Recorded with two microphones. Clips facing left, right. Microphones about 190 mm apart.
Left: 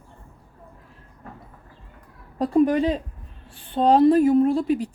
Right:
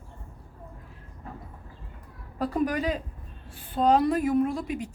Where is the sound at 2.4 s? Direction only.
30° left (ahead or behind).